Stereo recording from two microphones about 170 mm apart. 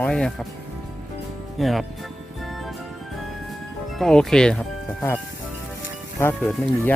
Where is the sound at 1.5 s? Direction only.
Centre (ahead or behind).